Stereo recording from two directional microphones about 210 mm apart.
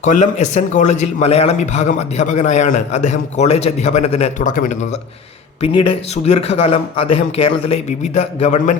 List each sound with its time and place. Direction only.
0.0 s a man's voice: 35° left (ahead or behind)
5.6 s speech: 25° left (ahead or behind)